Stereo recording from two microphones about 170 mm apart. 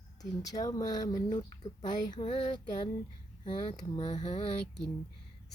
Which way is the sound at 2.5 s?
25° left (ahead or behind).